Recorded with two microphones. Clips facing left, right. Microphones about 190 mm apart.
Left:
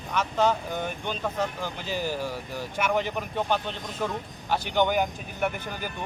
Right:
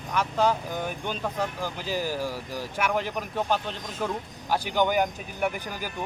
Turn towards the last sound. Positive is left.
turn(degrees=-5)  # may be behind; listen again after turning